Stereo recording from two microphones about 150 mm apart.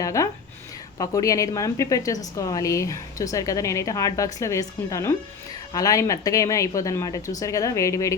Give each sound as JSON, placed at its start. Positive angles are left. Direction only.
{"t": 0.0, "sound": "a woman's voice", "side_deg": 20}